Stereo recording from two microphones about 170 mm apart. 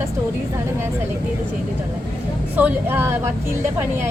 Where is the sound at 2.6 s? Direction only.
10° right (ahead or behind).